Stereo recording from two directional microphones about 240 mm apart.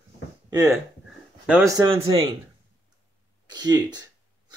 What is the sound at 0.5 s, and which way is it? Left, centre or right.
Speech, centre.